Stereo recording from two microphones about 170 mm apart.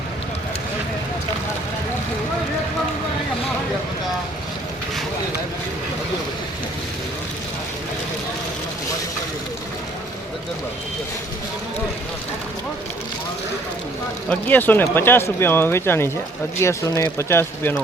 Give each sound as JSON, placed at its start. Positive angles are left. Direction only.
{"t": 14.3, "sound": "speech", "side_deg": 10}